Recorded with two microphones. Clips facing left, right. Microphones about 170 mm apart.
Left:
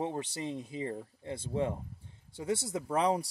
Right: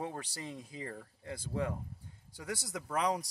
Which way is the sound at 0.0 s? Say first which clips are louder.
Left 6 dB; 25° left (ahead or behind).